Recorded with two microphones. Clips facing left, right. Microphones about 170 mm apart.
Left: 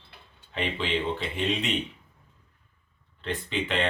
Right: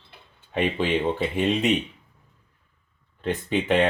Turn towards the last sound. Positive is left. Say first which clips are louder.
# right 7 dB
turn(degrees=-50)  # may be behind; listen again after turning